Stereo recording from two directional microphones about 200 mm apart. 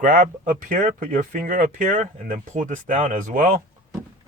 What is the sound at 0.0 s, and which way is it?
Speech, 40° right (ahead or behind).